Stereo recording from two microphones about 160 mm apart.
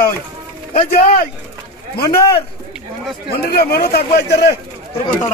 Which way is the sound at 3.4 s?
70° left (ahead or behind).